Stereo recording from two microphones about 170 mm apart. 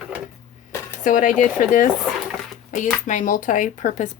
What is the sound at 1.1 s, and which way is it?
Speech, 50° left (ahead or behind).